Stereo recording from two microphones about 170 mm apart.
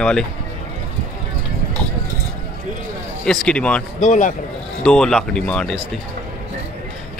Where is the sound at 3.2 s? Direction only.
5° left (ahead or behind).